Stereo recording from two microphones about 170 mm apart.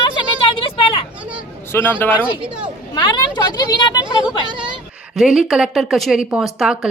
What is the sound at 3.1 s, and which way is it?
Speech, 25° left (ahead or behind).